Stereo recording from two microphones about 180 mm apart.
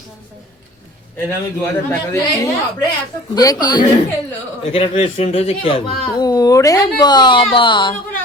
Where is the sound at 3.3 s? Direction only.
20° left (ahead or behind).